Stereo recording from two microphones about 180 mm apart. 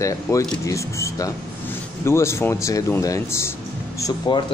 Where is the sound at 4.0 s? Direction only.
25° left (ahead or behind).